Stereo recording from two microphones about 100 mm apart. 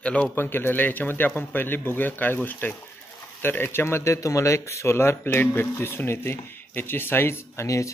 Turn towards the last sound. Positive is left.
turn(degrees=30)  # may be behind; listen again after turning